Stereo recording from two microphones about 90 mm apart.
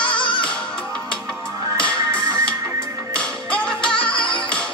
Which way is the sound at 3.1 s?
10° left (ahead or behind).